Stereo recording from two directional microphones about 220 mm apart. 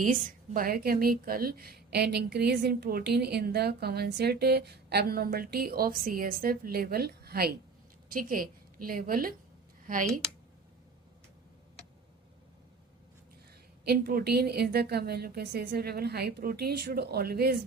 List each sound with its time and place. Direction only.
0.0 s a woman's voice: 40° right (ahead or behind)
13.8 s a woman's voice: 45° right (ahead or behind)